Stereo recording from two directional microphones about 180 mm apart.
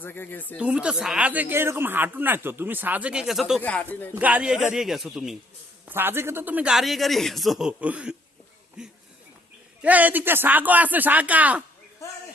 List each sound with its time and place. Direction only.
0.0 s speech: 10° left (ahead or behind)
0.5 s speech: 5° right (ahead or behind)
3.6 s speech: 10° left (ahead or behind)
4.1 s speech: 10° right (ahead or behind)
5.9 s speech: 10° right (ahead or behind)
9.8 s speech: 10° right (ahead or behind)